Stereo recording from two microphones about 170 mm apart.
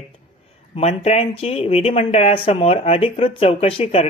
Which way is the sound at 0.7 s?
40° left (ahead or behind).